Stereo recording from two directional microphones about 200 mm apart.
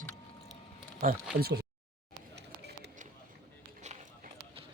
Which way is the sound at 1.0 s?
50° right (ahead or behind).